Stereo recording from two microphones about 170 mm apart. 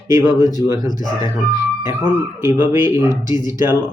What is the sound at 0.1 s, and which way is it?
Speech, 20° right (ahead or behind).